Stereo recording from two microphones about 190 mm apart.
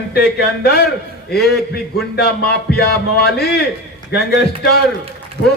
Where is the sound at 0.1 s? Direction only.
55° left (ahead or behind).